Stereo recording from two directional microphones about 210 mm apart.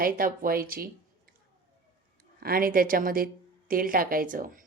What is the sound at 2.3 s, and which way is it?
Speech, 45° right (ahead or behind).